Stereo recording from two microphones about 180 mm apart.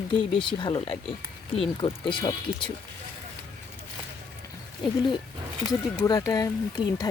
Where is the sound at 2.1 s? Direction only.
25° left (ahead or behind).